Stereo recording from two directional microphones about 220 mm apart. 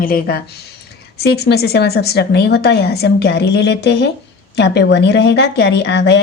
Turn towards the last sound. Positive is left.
turn(degrees=50)  # may be behind; listen again after turning